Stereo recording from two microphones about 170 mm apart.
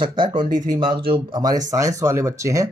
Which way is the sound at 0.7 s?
25° right (ahead or behind).